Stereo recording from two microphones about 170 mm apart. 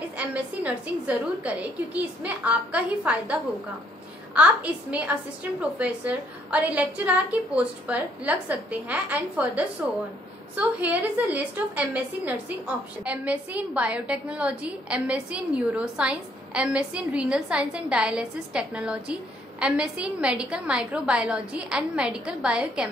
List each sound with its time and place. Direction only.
0.2 s a woman's voice: 10° right (ahead or behind)
4.4 s a woman's voice: 10° right (ahead or behind)